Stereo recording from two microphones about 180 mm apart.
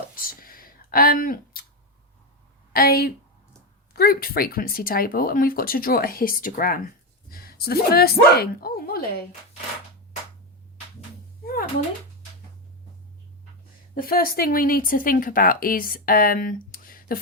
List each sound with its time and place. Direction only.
0.2 s a sound: 55° left (ahead or behind)
2.7 s speech: 55° left (ahead or behind)
13.9 s speech: 55° left (ahead or behind)